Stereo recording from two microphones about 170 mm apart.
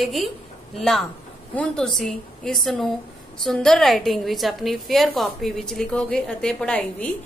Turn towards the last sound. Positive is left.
turn(degrees=5)  # may be behind; listen again after turning